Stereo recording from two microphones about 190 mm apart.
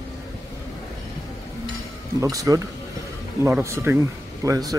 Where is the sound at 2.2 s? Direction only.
15° right (ahead or behind).